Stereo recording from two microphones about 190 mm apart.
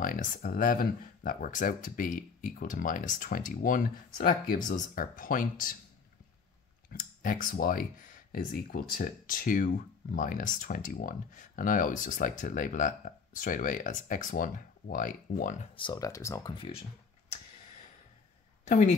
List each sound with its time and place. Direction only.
0.0 s speech: 45° left (ahead or behind)
6.9 s speech: 45° left (ahead or behind)
15.7 s speech: 25° left (ahead or behind)
16.5 s speech: 25° left (ahead or behind)
18.7 s a woman's voice: 40° left (ahead or behind)